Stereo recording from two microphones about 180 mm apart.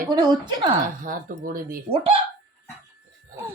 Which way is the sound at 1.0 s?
50° right (ahead or behind).